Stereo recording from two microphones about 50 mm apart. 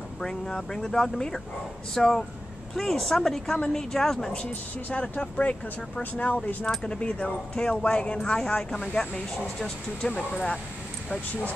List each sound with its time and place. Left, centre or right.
0.2 s speech: centre
5.1 s speech: left
6.6 s speech: centre
9.6 s speech: centre